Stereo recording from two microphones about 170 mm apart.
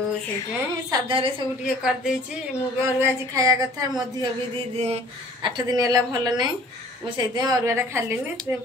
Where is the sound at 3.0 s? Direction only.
20° right (ahead or behind).